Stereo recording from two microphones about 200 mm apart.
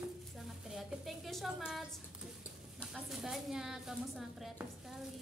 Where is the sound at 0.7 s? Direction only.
Centre (ahead or behind).